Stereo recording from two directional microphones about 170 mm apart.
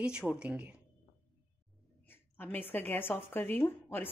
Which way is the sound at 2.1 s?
10° left (ahead or behind).